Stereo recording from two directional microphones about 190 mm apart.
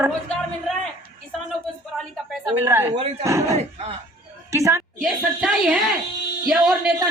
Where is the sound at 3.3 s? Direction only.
15° right (ahead or behind).